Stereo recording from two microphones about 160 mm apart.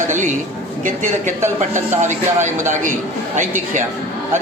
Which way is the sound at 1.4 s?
15° right (ahead or behind).